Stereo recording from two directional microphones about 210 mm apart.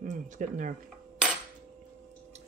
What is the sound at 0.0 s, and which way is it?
Speech, 40° right (ahead or behind).